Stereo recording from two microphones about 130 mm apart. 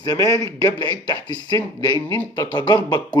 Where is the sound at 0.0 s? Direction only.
30° left (ahead or behind).